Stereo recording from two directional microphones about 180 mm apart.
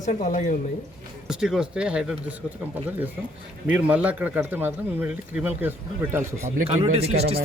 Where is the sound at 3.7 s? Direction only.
10° right (ahead or behind).